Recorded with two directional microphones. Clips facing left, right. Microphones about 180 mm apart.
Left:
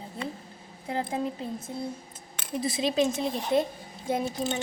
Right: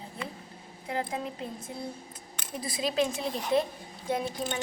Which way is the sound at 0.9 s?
30° left (ahead or behind).